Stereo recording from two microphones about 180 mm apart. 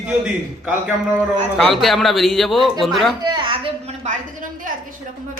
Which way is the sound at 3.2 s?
25° right (ahead or behind).